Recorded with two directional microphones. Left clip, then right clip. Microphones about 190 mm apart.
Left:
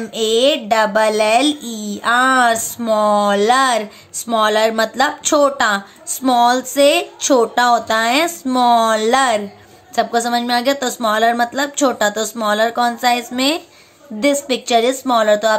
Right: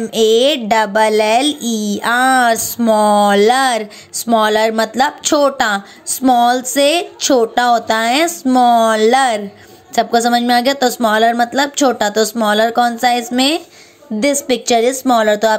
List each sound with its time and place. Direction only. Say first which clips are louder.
0.0 s speech: right 3 dB; 30° right (ahead or behind)